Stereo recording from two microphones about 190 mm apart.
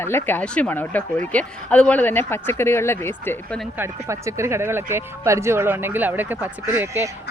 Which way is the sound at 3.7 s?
15° right (ahead or behind).